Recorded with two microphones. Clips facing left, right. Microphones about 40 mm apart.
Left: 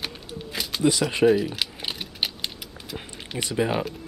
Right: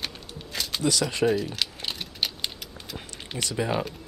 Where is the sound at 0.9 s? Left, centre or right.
Left.